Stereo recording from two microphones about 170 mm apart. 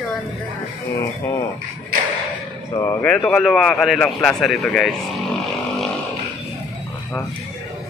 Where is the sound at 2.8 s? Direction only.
15° left (ahead or behind).